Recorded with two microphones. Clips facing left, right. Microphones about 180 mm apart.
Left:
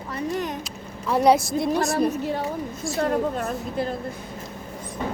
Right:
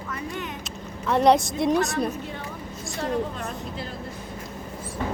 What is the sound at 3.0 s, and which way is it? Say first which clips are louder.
Speech: left 4 dB; 55° left (ahead or behind).